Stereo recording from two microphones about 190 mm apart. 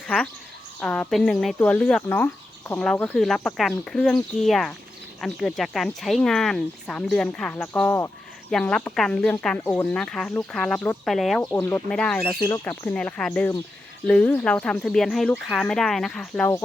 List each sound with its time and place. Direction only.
0.8 s speech: 5° left (ahead or behind)
8.4 s speech: 5° left (ahead or behind)
12.4 s speech: 20° left (ahead or behind)
12.6 s speech: 5° left (ahead or behind)